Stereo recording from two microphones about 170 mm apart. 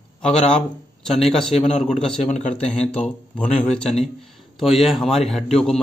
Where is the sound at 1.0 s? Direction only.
5° left (ahead or behind).